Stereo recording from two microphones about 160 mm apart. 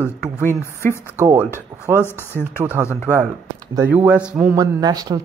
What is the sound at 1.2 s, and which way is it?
Speech, 10° right (ahead or behind).